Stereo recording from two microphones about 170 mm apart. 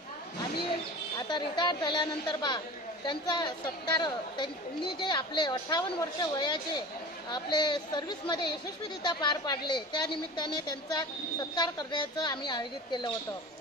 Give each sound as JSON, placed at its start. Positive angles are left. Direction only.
{"t": 1.2, "sound": "a woman's voice", "side_deg": 25}